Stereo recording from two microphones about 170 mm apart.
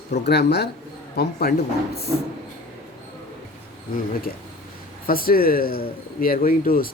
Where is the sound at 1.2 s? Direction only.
65° left (ahead or behind).